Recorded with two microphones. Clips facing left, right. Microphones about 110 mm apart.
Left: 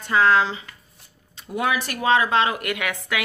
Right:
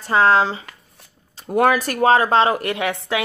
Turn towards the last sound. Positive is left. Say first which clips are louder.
# right 4 dB
turn(degrees=-30)  # may be behind; listen again after turning